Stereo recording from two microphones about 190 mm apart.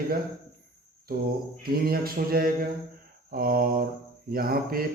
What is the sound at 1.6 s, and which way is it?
A man's voice, 50° right (ahead or behind).